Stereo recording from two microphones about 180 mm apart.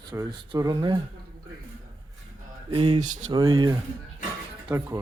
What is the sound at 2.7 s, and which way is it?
Mantra, 30° right (ahead or behind).